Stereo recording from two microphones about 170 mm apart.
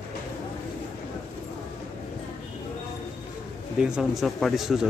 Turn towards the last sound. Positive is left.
turn(degrees=0)  # may be behind; listen again after turning